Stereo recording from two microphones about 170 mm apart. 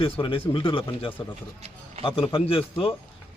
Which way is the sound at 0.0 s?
30° left (ahead or behind).